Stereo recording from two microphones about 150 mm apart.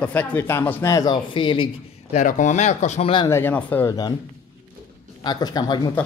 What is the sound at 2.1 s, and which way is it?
Speech, 60° left (ahead or behind).